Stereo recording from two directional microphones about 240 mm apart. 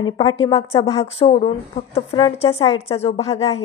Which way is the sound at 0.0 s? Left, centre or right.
Left.